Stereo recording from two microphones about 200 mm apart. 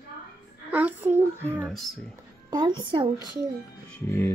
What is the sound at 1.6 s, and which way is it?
Speech, centre (ahead or behind).